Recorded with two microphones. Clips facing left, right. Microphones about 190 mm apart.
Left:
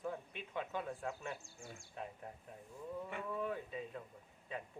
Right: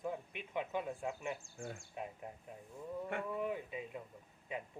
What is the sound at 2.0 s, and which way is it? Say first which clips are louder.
Speech: right 1 dB; 15° right (ahead or behind).